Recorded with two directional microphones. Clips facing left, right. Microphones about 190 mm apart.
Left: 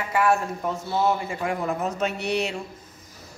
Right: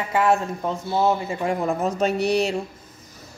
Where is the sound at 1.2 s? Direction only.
35° right (ahead or behind).